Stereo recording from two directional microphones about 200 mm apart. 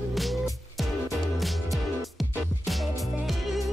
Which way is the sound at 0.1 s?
Centre (ahead or behind).